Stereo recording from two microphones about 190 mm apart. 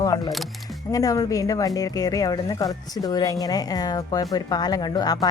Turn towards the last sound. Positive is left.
turn(degrees=20)  # may be behind; listen again after turning